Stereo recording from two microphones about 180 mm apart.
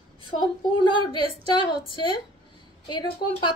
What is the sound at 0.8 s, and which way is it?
A woman's voice, 25° left (ahead or behind).